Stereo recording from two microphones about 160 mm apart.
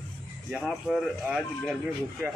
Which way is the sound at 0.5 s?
Centre (ahead or behind).